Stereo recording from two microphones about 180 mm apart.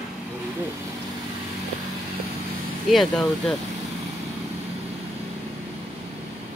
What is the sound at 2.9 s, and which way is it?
Speech, centre (ahead or behind).